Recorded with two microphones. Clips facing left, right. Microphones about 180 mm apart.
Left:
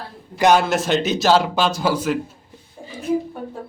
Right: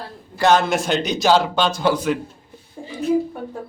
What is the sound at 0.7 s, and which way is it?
A man's voice, centre (ahead or behind).